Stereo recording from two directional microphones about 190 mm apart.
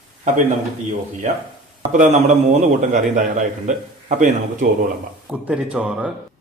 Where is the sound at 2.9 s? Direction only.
40° right (ahead or behind).